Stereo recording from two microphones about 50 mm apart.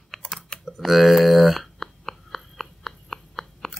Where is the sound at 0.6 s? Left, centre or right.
Centre.